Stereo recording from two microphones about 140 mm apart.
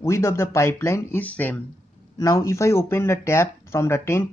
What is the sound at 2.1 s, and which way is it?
Speech, 25° left (ahead or behind).